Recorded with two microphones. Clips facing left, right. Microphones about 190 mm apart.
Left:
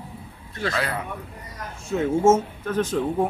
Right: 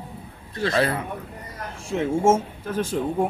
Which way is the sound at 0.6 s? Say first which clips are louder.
Right 5 dB; 30° right (ahead or behind).